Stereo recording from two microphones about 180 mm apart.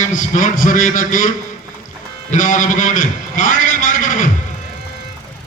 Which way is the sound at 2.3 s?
45° left (ahead or behind).